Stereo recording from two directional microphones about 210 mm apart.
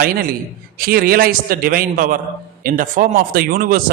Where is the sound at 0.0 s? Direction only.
45° right (ahead or behind).